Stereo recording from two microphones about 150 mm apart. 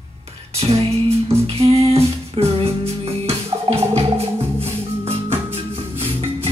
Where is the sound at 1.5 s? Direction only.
40° right (ahead or behind).